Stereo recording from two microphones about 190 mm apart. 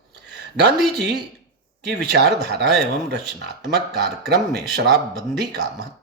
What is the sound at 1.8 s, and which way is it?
A man's voice, 60° right (ahead or behind).